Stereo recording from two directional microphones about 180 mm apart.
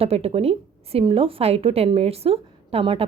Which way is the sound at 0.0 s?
35° right (ahead or behind).